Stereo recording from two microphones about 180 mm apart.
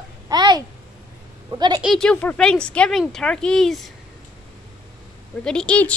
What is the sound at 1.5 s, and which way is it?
Speech, 20° right (ahead or behind).